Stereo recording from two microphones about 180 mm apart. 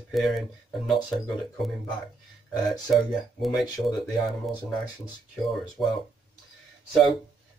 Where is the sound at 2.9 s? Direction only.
Centre (ahead or behind).